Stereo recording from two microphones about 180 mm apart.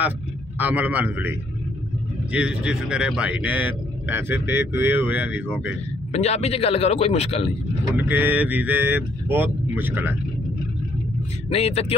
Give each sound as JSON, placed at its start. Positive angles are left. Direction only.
{"t": 0.6, "sound": "a man's voice", "side_deg": -10}
{"t": 2.3, "sound": "a man's voice", "side_deg": -5}
{"t": 6.1, "sound": "a man's voice", "side_deg": 35}
{"t": 7.9, "sound": "a man's voice", "side_deg": -10}
{"t": 11.4, "sound": "a man's voice", "side_deg": 35}